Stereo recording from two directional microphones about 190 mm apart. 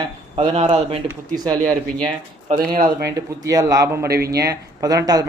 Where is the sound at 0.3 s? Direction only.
30° right (ahead or behind).